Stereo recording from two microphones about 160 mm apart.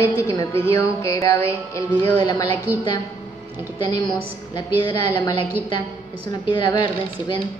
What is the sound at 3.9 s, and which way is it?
A woman's voice, 25° left (ahead or behind).